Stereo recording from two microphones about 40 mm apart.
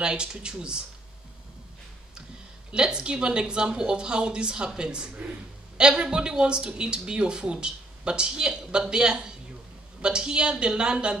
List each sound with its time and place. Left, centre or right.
0.0 s speech: right
2.7 s speech: right